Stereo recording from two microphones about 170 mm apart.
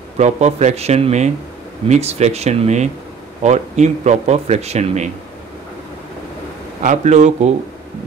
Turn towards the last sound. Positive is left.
turn(degrees=-45)  # may be behind; listen again after turning